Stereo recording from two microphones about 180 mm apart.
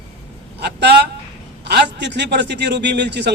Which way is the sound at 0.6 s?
70° right (ahead or behind).